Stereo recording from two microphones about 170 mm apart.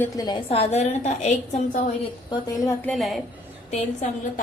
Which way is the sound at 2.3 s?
20° left (ahead or behind).